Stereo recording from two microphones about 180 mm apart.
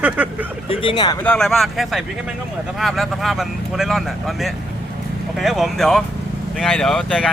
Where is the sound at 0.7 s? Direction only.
30° left (ahead or behind).